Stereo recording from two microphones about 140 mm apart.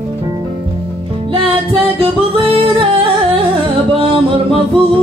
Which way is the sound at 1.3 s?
40° right (ahead or behind).